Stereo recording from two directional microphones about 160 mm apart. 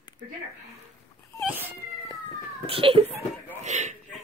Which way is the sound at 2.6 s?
35° right (ahead or behind).